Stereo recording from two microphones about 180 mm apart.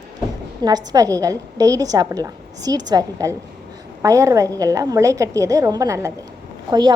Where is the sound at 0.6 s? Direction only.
20° right (ahead or behind).